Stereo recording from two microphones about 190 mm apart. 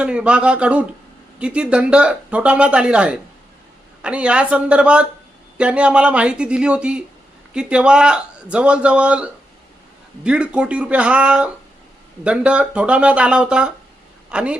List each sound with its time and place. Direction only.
0.0 s a man's voice: 5° right (ahead or behind)